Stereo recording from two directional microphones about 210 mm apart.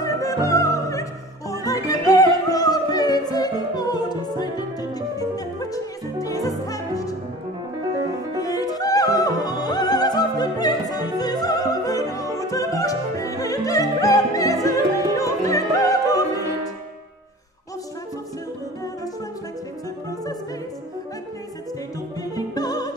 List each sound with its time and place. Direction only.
0.0 s opera: 15° left (ahead or behind)
1.5 s music: 15° left (ahead or behind)
8.4 s music: 15° left (ahead or behind)
22.2 s music: 15° left (ahead or behind)